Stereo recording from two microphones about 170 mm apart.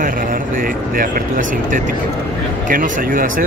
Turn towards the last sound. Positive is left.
turn(degrees=-55)  # may be behind; listen again after turning